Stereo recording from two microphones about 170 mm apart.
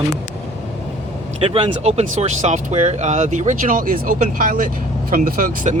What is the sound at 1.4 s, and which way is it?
Speech, 35° right (ahead or behind).